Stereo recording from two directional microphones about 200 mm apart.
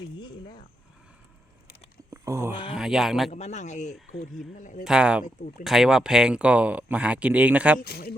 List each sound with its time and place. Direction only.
0.2 s speech: 25° left (ahead or behind)
2.0 s a sound: 15° right (ahead or behind)
2.7 s speech: centre (ahead or behind)
3.3 s speech: 35° left (ahead or behind)
4.8 s speech: 5° right (ahead or behind)
7.8 s speech: 50° left (ahead or behind)